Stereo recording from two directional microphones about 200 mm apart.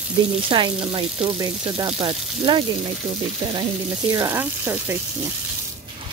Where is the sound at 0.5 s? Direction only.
25° right (ahead or behind).